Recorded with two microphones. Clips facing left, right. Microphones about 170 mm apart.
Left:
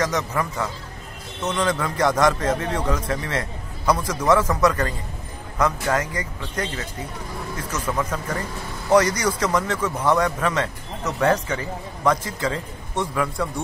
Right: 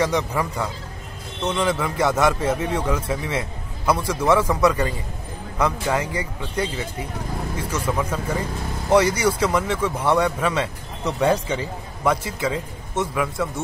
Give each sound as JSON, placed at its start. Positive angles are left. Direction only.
{"t": 0.0, "sound": "a man's voice", "side_deg": -10}